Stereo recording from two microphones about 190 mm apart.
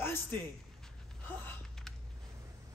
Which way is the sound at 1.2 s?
5° left (ahead or behind).